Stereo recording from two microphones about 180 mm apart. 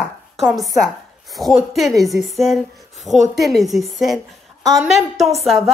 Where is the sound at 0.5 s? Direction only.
Centre (ahead or behind).